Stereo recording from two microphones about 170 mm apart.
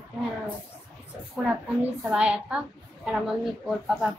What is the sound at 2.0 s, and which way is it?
A child's voice, 5° right (ahead or behind).